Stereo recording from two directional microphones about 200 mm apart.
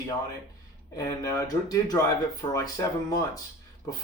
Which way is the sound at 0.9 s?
15° left (ahead or behind).